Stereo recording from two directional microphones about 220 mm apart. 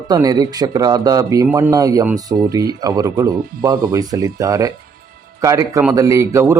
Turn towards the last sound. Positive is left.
turn(degrees=-15)  # may be behind; listen again after turning